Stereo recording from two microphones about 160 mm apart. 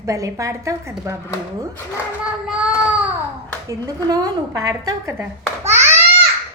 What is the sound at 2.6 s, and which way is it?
Child singing, 5° right (ahead or behind).